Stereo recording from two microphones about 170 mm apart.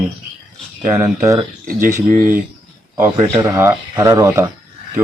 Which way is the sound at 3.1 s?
30° right (ahead or behind).